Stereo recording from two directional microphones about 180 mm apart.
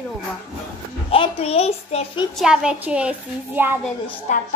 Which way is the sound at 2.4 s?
5° right (ahead or behind).